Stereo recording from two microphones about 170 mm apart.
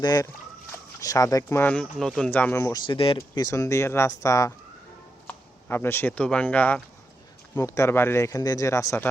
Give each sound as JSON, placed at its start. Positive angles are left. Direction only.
{"t": 0.0, "sound": "speech", "side_deg": 20}
{"t": 2.8, "sound": "speech", "side_deg": 30}
{"t": 5.6, "sound": "speech", "side_deg": 15}